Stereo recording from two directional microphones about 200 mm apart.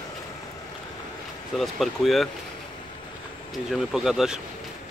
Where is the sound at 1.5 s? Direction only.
Centre (ahead or behind).